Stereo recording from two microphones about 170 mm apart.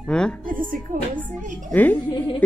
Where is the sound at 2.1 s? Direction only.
30° left (ahead or behind).